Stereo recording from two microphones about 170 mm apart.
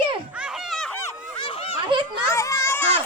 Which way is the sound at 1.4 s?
30° left (ahead or behind).